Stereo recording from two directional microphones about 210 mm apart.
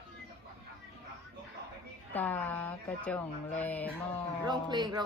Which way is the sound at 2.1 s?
10° left (ahead or behind).